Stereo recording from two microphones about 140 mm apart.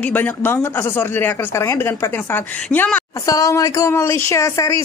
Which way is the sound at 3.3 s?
25° left (ahead or behind).